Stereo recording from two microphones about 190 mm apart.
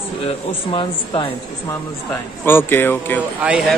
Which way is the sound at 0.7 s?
25° left (ahead or behind).